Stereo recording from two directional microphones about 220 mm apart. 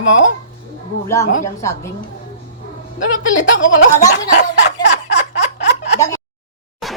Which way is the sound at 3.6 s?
60° left (ahead or behind).